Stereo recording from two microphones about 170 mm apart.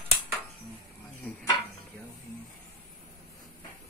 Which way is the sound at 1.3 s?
10° left (ahead or behind).